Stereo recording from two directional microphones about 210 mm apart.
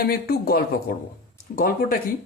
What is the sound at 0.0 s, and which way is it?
A man's voice, 45° left (ahead or behind).